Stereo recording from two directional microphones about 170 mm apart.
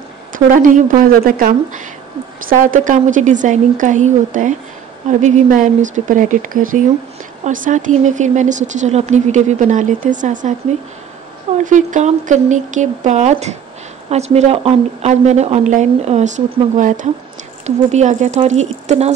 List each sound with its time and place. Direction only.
0.3 s speech: 50° right (ahead or behind)
11.6 s speech: 45° right (ahead or behind)